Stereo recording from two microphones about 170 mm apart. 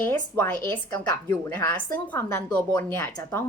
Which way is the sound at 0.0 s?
10° left (ahead or behind).